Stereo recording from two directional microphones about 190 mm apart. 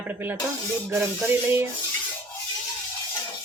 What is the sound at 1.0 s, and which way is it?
Music, 10° right (ahead or behind).